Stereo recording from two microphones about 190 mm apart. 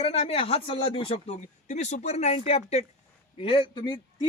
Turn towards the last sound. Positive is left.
turn(degrees=25)  # may be behind; listen again after turning